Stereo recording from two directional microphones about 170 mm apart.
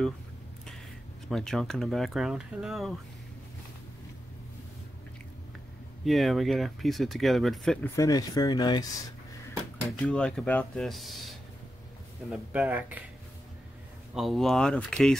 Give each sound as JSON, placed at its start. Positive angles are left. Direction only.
{"t": 1.3, "sound": "speech", "side_deg": 5}
{"t": 6.0, "sound": "speech", "side_deg": 0}
{"t": 7.9, "sound": "speech", "side_deg": 20}
{"t": 10.0, "sound": "speech", "side_deg": 5}
{"t": 14.1, "sound": "speech", "side_deg": 0}